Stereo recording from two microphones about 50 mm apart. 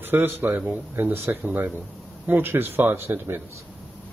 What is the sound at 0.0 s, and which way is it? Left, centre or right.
Speech, right.